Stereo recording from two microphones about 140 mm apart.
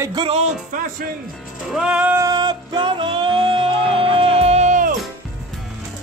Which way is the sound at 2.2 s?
30° right (ahead or behind).